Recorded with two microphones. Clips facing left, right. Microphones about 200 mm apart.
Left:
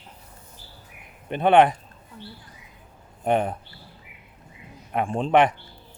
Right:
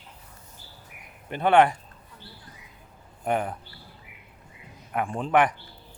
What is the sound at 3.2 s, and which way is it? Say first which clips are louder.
Speech: left 4 dB; 25° left (ahead or behind).